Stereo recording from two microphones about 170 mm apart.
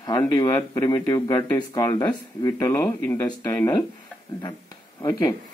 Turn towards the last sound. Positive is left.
turn(degrees=20)  # may be behind; listen again after turning